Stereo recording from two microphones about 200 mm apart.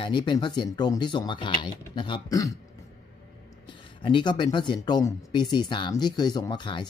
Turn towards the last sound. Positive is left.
turn(degrees=25)  # may be behind; listen again after turning